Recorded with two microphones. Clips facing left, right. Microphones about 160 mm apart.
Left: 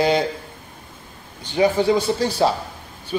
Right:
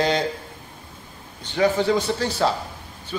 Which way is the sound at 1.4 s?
10° left (ahead or behind).